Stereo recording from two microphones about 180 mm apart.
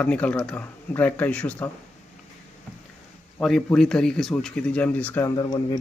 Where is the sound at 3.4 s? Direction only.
5° left (ahead or behind).